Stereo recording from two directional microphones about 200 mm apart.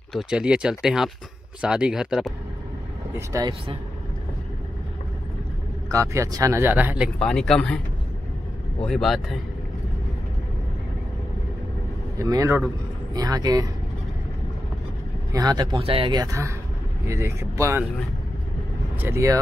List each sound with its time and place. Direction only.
0.1 s speech: 5° right (ahead or behind)
3.2 s speech: 20° right (ahead or behind)
5.9 s speech: 15° right (ahead or behind)
7.2 s speech: centre (ahead or behind)
8.8 s speech: centre (ahead or behind)
12.2 s speech: 15° right (ahead or behind)
15.3 s speech: 20° right (ahead or behind)
18.9 s speech: 10° right (ahead or behind)